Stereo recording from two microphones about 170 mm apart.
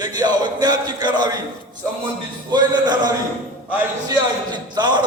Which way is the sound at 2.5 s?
25° right (ahead or behind).